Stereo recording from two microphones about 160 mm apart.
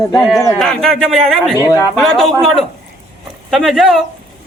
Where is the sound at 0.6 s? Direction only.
5° left (ahead or behind).